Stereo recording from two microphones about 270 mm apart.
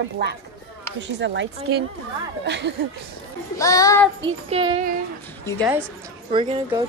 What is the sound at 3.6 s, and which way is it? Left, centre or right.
Speech, centre.